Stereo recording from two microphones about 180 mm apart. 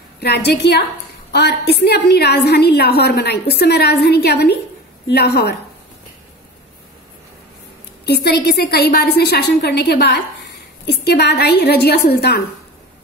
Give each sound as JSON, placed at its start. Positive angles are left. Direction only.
{"t": 0.2, "sound": "a woman's voice", "side_deg": 65}
{"t": 8.0, "sound": "a woman's voice", "side_deg": 65}